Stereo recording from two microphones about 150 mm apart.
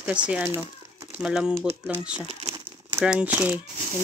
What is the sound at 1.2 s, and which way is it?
Speech, 5° right (ahead or behind).